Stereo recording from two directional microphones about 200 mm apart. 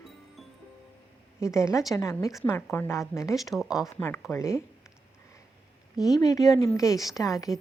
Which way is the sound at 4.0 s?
10° left (ahead or behind).